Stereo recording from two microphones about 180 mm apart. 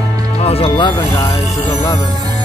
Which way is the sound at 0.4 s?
35° left (ahead or behind).